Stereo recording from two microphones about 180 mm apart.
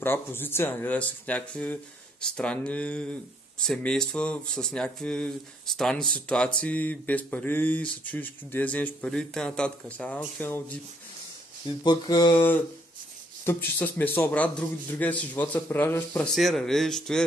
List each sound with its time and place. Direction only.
0.0 s speech: 10° left (ahead or behind)
11.8 s speech: 25° left (ahead or behind)
13.5 s speech: 10° left (ahead or behind)